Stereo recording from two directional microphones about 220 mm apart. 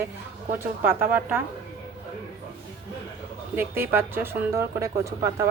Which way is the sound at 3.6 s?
10° right (ahead or behind).